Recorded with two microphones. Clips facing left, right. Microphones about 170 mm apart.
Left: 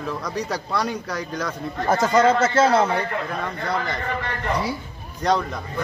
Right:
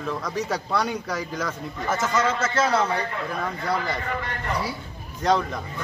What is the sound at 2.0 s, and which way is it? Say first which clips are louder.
Speech: left 7 dB; 30° left (ahead or behind).